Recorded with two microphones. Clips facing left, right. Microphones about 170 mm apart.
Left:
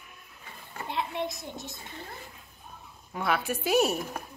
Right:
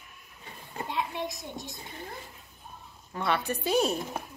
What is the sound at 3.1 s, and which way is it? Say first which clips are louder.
Speech: even; 5° left (ahead or behind).